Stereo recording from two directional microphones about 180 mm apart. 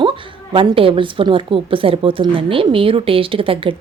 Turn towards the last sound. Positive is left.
turn(degrees=-30)  # may be behind; listen again after turning